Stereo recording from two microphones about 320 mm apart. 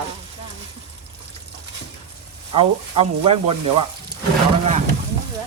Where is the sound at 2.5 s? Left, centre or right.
Centre.